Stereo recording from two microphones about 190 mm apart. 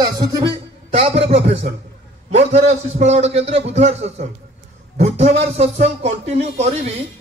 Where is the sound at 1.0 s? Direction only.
30° right (ahead or behind).